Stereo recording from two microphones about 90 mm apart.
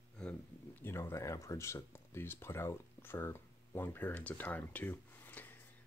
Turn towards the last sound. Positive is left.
turn(degrees=20)  # may be behind; listen again after turning